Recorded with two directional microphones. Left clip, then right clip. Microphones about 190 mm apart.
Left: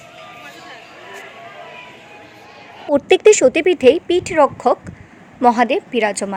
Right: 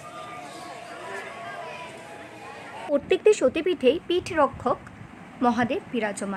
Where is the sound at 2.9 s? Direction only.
25° left (ahead or behind).